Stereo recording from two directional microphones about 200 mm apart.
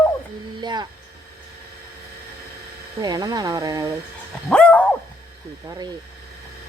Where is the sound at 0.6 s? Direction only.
20° right (ahead or behind).